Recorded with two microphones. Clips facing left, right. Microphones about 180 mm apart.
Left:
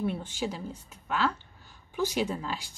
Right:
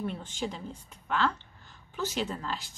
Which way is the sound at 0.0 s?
10° left (ahead or behind).